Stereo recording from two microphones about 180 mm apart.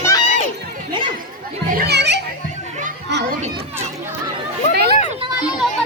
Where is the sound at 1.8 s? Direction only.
70° right (ahead or behind).